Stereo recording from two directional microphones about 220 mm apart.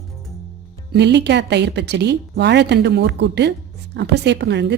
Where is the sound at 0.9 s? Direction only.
50° right (ahead or behind).